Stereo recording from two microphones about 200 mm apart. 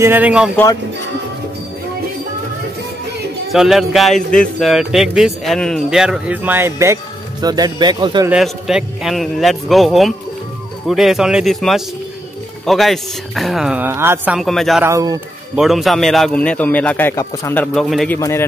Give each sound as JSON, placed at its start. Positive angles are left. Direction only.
{"t": 0.0, "sound": "speech", "side_deg": -10}
{"t": 3.5, "sound": "speech", "side_deg": 0}
{"t": 8.3, "sound": "speech", "side_deg": 0}
{"t": 14.9, "sound": "speech", "side_deg": -15}
{"t": 15.5, "sound": "a man's voice", "side_deg": 0}
{"t": 17.7, "sound": "speech", "side_deg": 0}
{"t": 18.1, "sound": "a man's voice", "side_deg": 10}